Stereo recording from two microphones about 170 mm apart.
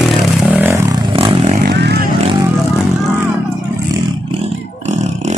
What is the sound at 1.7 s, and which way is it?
Vehicle, 80° right.